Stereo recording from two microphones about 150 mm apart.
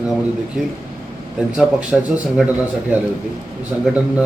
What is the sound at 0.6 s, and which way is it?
Speech, 5° right (ahead or behind).